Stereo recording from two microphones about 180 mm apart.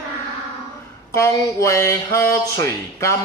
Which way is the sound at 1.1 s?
15° left (ahead or behind).